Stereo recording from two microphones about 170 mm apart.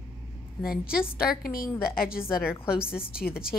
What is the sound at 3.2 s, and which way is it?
Speech, 60° left (ahead or behind).